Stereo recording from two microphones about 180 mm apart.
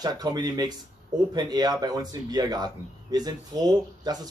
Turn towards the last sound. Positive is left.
turn(degrees=-20)  # may be behind; listen again after turning